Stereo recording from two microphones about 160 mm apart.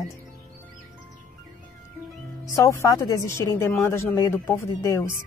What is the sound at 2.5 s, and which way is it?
Speech, 20° left (ahead or behind).